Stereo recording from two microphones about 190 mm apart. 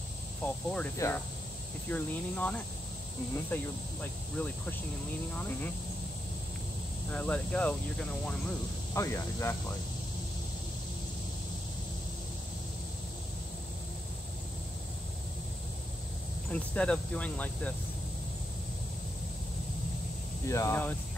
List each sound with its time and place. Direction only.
0.4 s speech: 5° left (ahead or behind)
4.0 s speech: 10° left (ahead or behind)
7.1 s speech: 5° left (ahead or behind)
16.4 s speech: 5° left (ahead or behind)
20.4 s speech: 15° left (ahead or behind)